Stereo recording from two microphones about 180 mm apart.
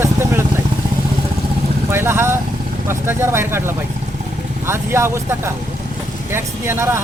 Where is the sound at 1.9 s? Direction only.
15° right (ahead or behind).